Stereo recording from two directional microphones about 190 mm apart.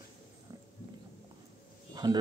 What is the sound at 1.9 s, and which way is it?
Livestock, 20° right (ahead or behind).